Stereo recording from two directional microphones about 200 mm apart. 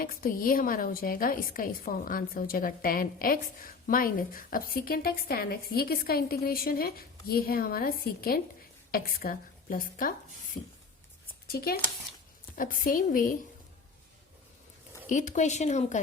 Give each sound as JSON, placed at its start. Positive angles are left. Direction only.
{"t": 0.0, "sound": "a woman's voice", "side_deg": 45}
{"t": 15.1, "sound": "speech", "side_deg": 40}